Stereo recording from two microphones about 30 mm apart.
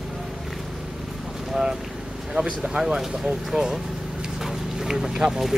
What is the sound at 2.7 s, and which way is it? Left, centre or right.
Speech, right.